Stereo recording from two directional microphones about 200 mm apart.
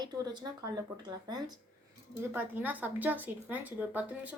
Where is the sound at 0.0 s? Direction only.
20° right (ahead or behind).